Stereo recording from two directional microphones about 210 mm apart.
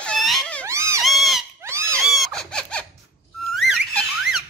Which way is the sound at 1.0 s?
Centre (ahead or behind).